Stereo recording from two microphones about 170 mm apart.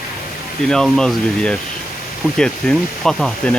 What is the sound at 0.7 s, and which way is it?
Speech, 5° left (ahead or behind).